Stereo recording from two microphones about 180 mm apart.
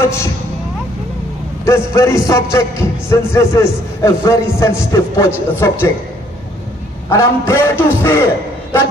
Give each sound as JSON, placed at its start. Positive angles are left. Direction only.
{"t": 0.0, "sound": "speech", "side_deg": 15}
{"t": 1.7, "sound": "speech", "side_deg": 15}
{"t": 7.1, "sound": "speech", "side_deg": 15}